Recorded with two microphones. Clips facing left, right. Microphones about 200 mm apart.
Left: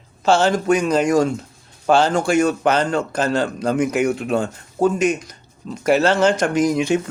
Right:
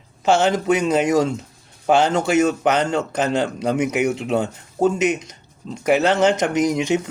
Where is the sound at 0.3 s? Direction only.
20° right (ahead or behind).